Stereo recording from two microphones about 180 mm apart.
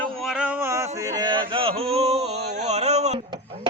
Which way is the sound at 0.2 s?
5° right (ahead or behind).